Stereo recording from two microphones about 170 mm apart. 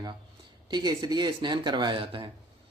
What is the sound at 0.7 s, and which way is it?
Speech, 25° right (ahead or behind).